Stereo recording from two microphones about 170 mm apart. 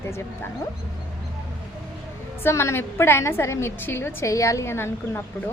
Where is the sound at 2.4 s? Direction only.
15° left (ahead or behind).